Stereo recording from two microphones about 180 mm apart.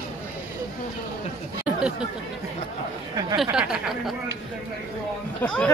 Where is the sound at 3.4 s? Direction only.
5° right (ahead or behind).